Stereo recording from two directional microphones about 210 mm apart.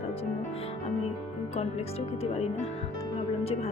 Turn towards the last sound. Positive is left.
turn(degrees=30)  # may be behind; listen again after turning